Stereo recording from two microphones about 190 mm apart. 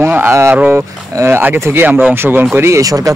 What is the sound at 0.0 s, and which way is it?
Speech, 10° right (ahead or behind).